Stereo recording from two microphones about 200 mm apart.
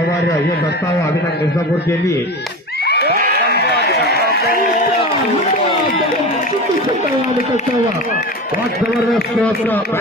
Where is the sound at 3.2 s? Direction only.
50° right (ahead or behind).